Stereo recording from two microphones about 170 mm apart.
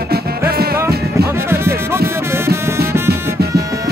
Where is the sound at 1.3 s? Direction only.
15° right (ahead or behind).